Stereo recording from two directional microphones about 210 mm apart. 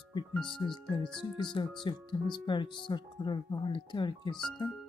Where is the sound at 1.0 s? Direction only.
20° left (ahead or behind).